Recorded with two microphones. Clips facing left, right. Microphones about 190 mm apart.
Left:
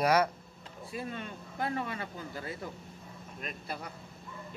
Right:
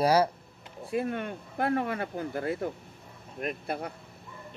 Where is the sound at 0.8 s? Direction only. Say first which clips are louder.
Right 9 dB; 60° right (ahead or behind).